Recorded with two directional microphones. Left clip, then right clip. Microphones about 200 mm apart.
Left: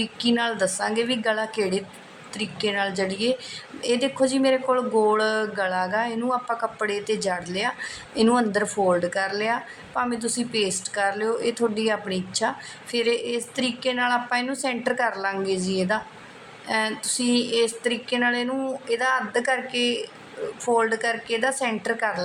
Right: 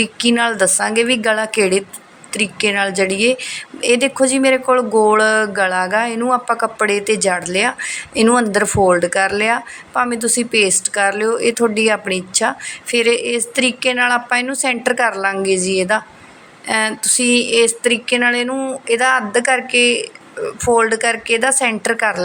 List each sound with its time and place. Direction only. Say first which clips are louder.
0.0 s a woman's voice: right 8 dB; 15° right (ahead or behind)